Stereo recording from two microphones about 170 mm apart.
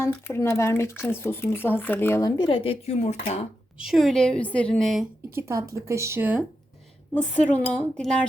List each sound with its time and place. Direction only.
0.0 s speech: 15° left (ahead or behind)
2.5 s speech: 35° left (ahead or behind)
3.8 s a woman's voice: centre (ahead or behind)
5.3 s speech: 15° right (ahead or behind)
7.7 s a woman's voice: 5° left (ahead or behind)